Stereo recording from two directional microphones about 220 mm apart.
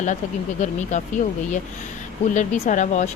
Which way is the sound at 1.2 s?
35° left (ahead or behind).